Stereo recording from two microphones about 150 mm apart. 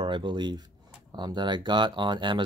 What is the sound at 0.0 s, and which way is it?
Speech, 35° right (ahead or behind).